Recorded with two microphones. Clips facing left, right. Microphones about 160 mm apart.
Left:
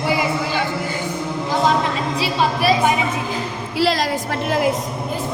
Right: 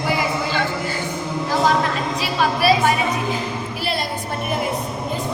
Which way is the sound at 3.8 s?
90° left.